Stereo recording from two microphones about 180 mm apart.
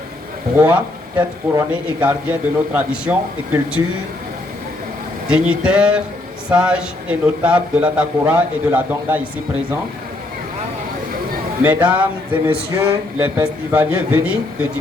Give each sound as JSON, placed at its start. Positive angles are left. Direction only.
{"t": 0.5, "sound": "speech", "side_deg": -10}
{"t": 5.3, "sound": "speech", "side_deg": -5}
{"t": 11.9, "sound": "speech", "side_deg": -10}